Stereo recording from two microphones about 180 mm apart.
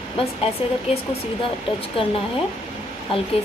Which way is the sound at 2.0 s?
30° left (ahead or behind).